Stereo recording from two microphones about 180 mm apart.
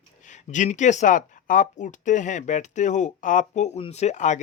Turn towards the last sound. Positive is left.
turn(degrees=40)  # may be behind; listen again after turning